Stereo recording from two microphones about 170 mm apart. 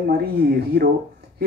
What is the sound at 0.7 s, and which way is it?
Speech, 70° right (ahead or behind).